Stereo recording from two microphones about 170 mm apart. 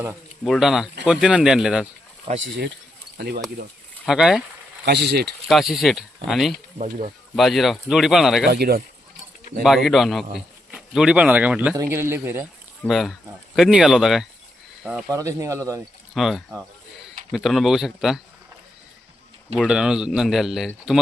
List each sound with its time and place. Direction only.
0.4 s speech: centre (ahead or behind)
3.2 s speech: 70° right (ahead or behind)
4.0 s speech: 5° right (ahead or behind)
4.9 s speech: 75° right (ahead or behind)
5.5 s speech: centre (ahead or behind)
8.4 s speech: 65° right (ahead or behind)
9.6 s a man's voice: centre (ahead or behind)
12.8 s speech: centre (ahead or behind)
15.1 s a man's voice: 20° right (ahead or behind)
16.1 s speech: centre (ahead or behind)
19.6 s speech: 5° right (ahead or behind)